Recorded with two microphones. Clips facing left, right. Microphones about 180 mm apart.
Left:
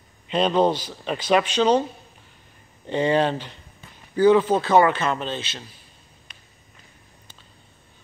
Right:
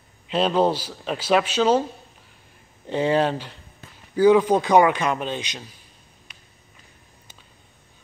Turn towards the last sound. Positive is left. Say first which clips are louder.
# even
turn(degrees=-10)  # may be behind; listen again after turning